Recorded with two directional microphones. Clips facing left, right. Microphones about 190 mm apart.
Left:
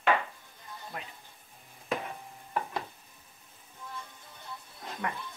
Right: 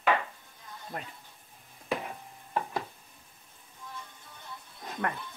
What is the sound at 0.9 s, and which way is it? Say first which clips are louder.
Speech: right 3 dB; 40° right (ahead or behind).